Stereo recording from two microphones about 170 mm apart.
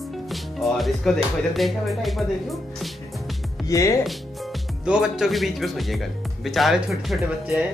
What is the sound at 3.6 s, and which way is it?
Speech, 20° left (ahead or behind).